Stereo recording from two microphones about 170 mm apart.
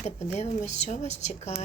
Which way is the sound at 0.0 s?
40° left (ahead or behind).